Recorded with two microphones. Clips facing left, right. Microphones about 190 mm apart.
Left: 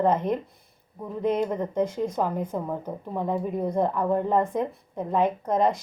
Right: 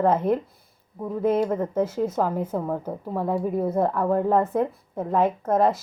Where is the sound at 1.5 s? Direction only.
5° right (ahead or behind).